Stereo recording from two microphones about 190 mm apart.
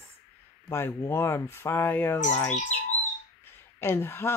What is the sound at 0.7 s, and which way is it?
A woman's voice, 15° left (ahead or behind).